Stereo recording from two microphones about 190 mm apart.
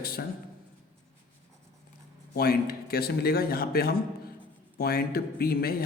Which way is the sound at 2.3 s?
50° left (ahead or behind).